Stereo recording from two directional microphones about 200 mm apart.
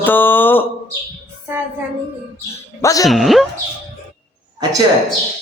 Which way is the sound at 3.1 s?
Centre (ahead or behind).